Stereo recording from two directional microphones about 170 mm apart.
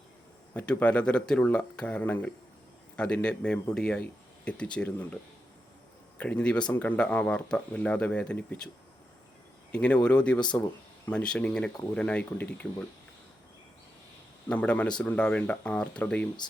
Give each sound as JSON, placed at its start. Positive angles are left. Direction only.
{"t": 0.5, "sound": "speech", "side_deg": 10}
{"t": 6.1, "sound": "speech", "side_deg": 5}
{"t": 9.7, "sound": "speech", "side_deg": 5}
{"t": 14.5, "sound": "speech", "side_deg": 10}